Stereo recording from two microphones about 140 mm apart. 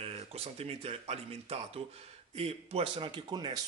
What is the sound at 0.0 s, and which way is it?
Speech, 45° right (ahead or behind).